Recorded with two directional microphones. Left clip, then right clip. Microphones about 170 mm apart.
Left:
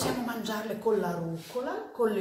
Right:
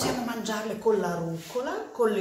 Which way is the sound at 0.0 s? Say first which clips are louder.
Right 2 dB; 20° left (ahead or behind).